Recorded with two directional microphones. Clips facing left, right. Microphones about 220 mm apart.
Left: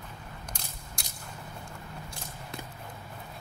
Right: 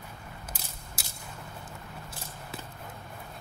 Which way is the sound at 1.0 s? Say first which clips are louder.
Even; 5° right (ahead or behind).